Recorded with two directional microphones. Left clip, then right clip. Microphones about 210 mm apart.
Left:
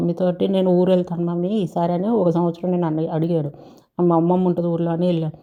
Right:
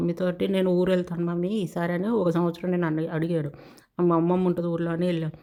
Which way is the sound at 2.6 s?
40° right (ahead or behind).